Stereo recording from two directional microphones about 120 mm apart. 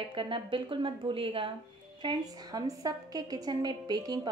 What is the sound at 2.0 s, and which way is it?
A woman's voice, 30° right (ahead or behind).